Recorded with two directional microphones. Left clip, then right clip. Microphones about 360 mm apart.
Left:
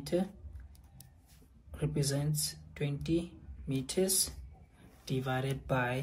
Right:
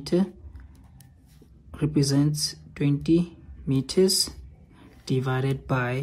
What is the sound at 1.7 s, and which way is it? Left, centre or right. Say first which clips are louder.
Speech: right 10 dB; centre.